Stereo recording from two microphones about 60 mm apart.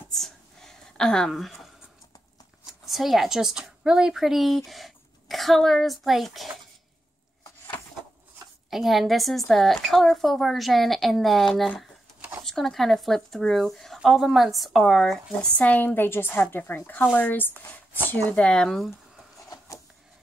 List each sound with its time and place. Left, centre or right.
0.1 s a sound: centre
2.9 s a woman's voice: centre
8.6 s a woman's voice: centre
15.4 s speech: left
18.3 s speech: centre